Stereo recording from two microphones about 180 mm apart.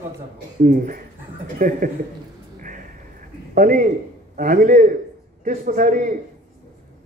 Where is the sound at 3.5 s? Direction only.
50° right (ahead or behind).